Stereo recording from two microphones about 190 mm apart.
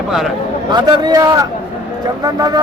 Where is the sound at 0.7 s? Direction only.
20° right (ahead or behind).